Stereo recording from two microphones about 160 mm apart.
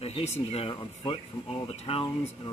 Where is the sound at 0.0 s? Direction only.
40° left (ahead or behind).